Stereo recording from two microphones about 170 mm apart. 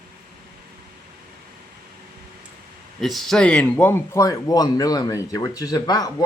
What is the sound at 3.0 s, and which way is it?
Speech, centre (ahead or behind).